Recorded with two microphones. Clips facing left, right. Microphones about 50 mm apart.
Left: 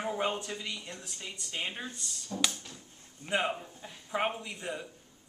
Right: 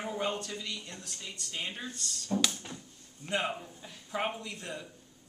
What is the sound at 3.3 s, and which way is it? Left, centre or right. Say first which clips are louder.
A man's voice: left 2 dB; centre.